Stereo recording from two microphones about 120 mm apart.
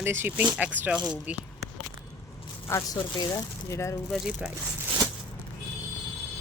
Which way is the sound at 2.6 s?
25° left (ahead or behind).